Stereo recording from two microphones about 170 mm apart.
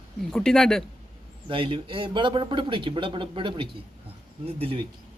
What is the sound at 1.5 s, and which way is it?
Speech, 30° right (ahead or behind).